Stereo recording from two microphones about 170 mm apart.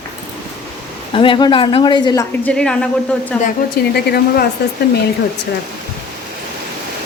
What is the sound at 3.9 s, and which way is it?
Speech, 70° left (ahead or behind).